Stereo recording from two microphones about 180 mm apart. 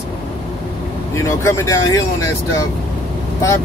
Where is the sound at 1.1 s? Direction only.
15° left (ahead or behind).